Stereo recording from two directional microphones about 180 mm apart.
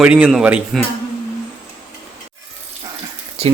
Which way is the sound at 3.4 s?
35° right (ahead or behind).